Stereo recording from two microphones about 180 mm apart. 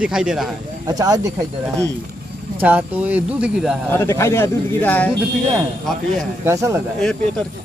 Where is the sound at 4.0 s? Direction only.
15° left (ahead or behind).